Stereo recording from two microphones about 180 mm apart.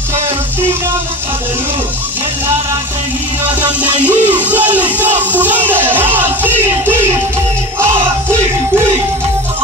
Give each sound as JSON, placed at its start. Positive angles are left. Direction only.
{"t": 3.8, "sound": "speech", "side_deg": -10}